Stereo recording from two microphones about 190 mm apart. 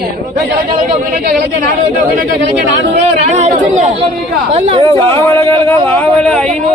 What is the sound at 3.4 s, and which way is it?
Speech, 35° right (ahead or behind).